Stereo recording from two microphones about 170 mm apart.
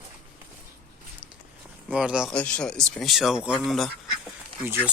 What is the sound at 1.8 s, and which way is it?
Speech, 5° right (ahead or behind).